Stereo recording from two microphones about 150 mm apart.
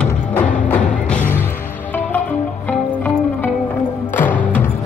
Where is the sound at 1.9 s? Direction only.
10° left (ahead or behind).